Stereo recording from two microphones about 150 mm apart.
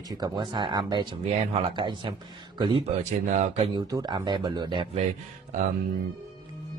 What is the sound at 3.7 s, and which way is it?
Speech, 30° right (ahead or behind).